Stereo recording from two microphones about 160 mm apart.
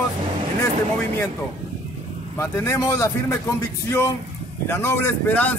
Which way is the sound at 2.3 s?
15° left (ahead or behind).